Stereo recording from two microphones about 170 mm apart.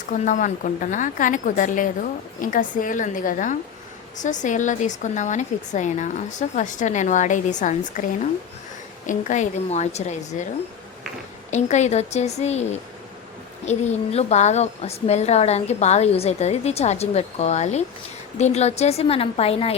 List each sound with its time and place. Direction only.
0.1 s a woman's voice: 50° left (ahead or behind)
9.0 s a woman's voice: 45° left (ahead or behind)
11.5 s a woman's voice: 45° left (ahead or behind)
13.7 s a woman's voice: 40° left (ahead or behind)